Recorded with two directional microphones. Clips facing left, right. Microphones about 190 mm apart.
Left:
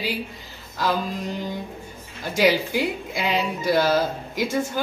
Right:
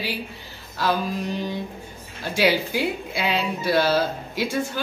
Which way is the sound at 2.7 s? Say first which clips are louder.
Even; 15° left (ahead or behind).